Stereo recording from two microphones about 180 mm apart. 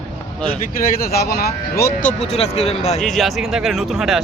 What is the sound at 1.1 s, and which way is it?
Speech, 60° left (ahead or behind).